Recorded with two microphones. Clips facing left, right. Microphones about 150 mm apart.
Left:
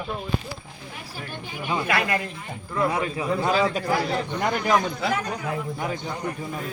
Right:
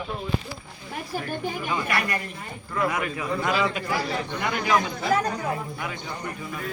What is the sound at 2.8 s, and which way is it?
A man's voice, 30° left (ahead or behind).